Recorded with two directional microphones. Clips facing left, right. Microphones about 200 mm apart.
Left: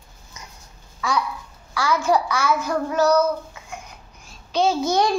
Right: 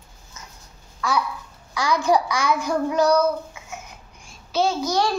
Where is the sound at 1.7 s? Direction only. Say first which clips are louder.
Even; 15° right (ahead or behind).